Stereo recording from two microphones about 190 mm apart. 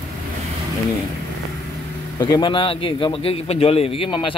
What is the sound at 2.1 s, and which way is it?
A man's voice, 20° left (ahead or behind).